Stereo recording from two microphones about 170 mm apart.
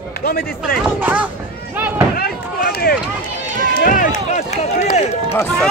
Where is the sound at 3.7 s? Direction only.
55° left (ahead or behind).